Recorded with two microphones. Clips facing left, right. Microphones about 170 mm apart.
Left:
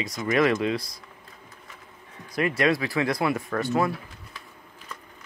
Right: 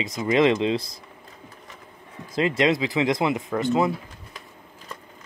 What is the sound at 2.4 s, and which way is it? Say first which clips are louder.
Speech: right 2 dB; 20° right (ahead or behind).